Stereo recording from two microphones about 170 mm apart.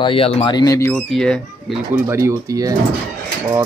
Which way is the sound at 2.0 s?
15° right (ahead or behind).